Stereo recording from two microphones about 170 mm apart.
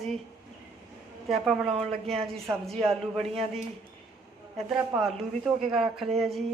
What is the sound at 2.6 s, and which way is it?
A woman's voice, centre (ahead or behind).